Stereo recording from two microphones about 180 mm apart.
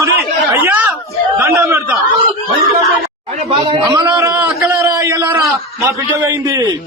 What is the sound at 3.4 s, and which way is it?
A man's voice, 30° right (ahead or behind).